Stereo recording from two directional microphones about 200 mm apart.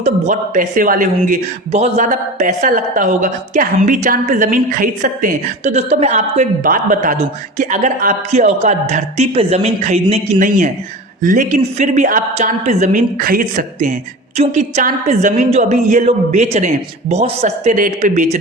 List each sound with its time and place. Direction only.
0.0 s speech: 40° right (ahead or behind)